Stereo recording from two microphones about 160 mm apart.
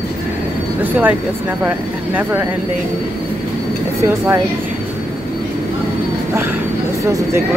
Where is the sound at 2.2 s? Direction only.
15° right (ahead or behind).